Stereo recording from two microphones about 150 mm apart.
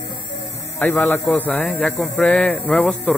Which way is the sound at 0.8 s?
10° left (ahead or behind).